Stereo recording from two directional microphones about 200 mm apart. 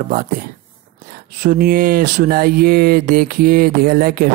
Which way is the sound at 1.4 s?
45° right (ahead or behind).